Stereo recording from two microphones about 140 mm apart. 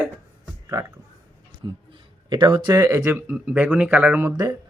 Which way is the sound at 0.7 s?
20° right (ahead or behind).